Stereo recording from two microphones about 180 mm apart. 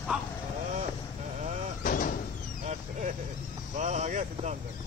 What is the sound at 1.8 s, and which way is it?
Door, 50° left (ahead or behind).